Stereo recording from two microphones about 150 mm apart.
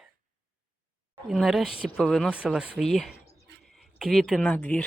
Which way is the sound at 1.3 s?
Centre (ahead or behind).